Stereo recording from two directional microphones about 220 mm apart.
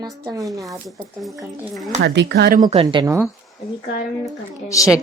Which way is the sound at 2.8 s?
15° right (ahead or behind).